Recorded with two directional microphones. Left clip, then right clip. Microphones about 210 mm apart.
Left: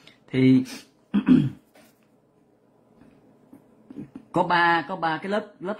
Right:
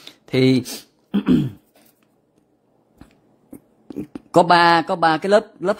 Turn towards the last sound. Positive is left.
turn(degrees=-50)  # may be behind; listen again after turning